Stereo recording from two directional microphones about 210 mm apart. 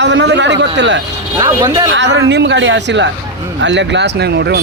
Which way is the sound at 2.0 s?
60° right (ahead or behind).